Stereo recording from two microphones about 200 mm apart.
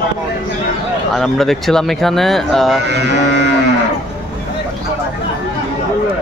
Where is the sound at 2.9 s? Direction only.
60° right (ahead or behind).